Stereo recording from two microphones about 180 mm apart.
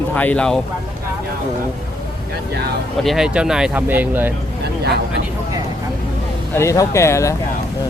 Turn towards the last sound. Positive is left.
turn(degrees=15)  # may be behind; listen again after turning